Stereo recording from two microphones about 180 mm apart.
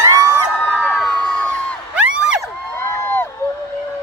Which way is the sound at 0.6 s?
10° left (ahead or behind).